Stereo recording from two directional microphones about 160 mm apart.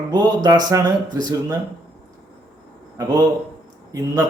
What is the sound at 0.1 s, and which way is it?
A man's voice, 25° right (ahead or behind).